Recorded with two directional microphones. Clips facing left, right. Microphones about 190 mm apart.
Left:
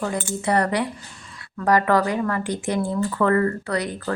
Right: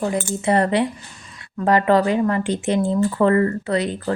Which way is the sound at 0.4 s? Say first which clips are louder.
Right 3 dB; 25° right (ahead or behind).